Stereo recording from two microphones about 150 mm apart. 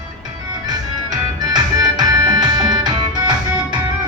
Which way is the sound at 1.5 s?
25° right (ahead or behind).